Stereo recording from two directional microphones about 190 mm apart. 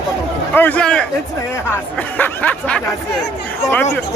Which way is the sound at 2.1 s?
10° left (ahead or behind).